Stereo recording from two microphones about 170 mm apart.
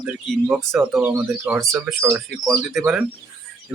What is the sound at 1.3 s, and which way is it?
Speech, 10° right (ahead or behind).